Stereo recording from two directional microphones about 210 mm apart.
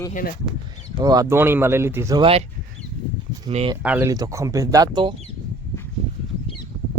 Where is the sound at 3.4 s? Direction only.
25° right (ahead or behind).